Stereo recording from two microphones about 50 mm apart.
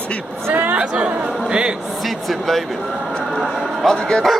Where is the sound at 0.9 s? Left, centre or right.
Right.